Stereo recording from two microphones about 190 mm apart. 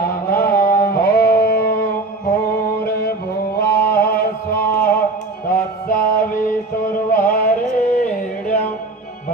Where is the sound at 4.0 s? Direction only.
50° left (ahead or behind).